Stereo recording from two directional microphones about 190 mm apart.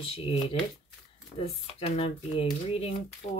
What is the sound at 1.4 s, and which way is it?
Speech, 30° left (ahead or behind).